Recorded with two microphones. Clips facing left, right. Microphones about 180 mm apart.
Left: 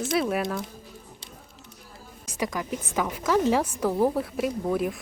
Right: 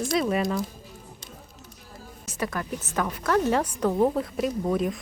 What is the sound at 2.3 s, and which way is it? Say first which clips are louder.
A woman's voice: left 1 dB; 15° left (ahead or behind).